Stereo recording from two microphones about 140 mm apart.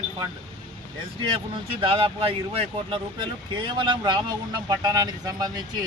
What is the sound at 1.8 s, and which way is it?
Speech, 40° right (ahead or behind).